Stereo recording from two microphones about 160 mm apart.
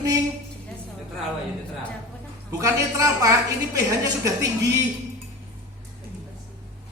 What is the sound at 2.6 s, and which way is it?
A woman's voice, 20° right (ahead or behind).